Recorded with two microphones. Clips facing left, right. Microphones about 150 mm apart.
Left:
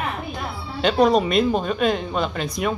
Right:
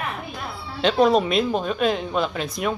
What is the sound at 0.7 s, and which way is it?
Speech, centre (ahead or behind).